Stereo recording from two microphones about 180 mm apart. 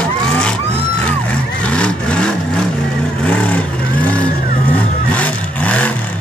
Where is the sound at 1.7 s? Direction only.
5° left (ahead or behind).